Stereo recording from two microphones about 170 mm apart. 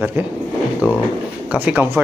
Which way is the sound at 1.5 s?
10° right (ahead or behind).